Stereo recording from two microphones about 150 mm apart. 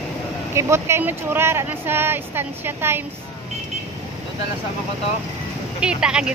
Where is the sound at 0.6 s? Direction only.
20° right (ahead or behind).